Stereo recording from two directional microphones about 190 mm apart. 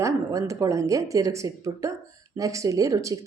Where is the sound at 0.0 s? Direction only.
15° right (ahead or behind).